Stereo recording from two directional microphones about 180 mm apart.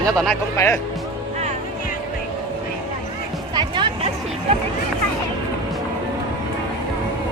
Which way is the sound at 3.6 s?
25° right (ahead or behind).